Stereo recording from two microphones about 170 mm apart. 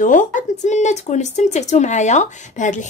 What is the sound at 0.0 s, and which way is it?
Speech, 50° left (ahead or behind).